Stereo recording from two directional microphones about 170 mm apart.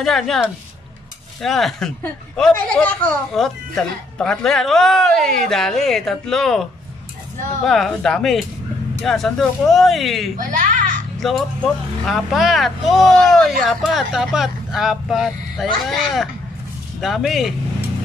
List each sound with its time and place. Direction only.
0.0 s speech: centre (ahead or behind)
10.3 s a child's voice: 50° right (ahead or behind)
11.1 s speech: centre (ahead or behind)